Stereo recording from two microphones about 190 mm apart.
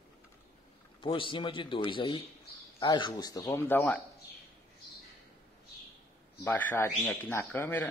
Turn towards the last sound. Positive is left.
turn(degrees=10)  # may be behind; listen again after turning